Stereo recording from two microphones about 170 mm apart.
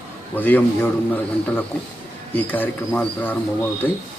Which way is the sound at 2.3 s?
10° left (ahead or behind).